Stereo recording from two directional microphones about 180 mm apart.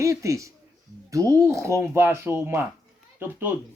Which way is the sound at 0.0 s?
15° right (ahead or behind).